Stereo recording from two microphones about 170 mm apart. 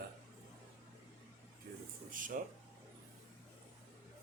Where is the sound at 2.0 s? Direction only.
50° right (ahead or behind).